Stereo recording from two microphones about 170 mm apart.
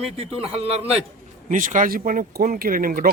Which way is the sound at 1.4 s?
50° right (ahead or behind).